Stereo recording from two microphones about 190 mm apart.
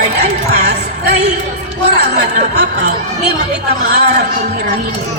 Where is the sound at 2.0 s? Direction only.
60° right (ahead or behind).